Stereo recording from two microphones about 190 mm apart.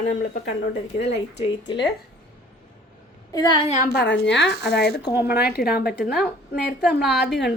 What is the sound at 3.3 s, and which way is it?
Speech, 20° left (ahead or behind).